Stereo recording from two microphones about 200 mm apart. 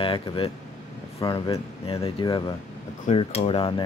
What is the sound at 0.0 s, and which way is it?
Speech, 25° left (ahead or behind).